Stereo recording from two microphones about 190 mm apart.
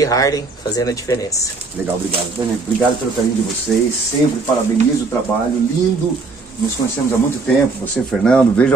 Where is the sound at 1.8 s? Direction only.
10° right (ahead or behind).